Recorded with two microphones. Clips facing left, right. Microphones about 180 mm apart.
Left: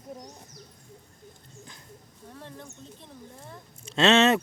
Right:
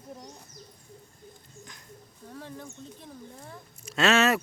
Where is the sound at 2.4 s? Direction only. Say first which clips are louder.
Right 2 dB; centre (ahead or behind).